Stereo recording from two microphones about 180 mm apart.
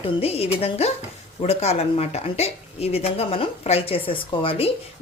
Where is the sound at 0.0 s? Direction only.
35° left (ahead or behind).